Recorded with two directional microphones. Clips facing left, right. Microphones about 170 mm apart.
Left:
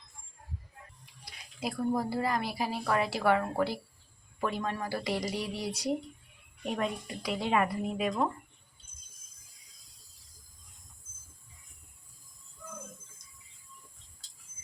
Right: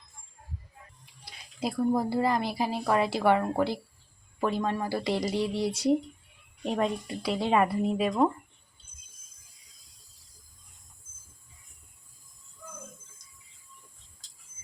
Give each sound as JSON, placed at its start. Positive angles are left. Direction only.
{"t": 1.2, "sound": "a woman's voice", "side_deg": -25}